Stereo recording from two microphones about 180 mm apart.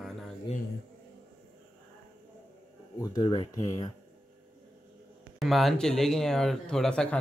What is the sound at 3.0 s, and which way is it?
Speech, 20° left (ahead or behind).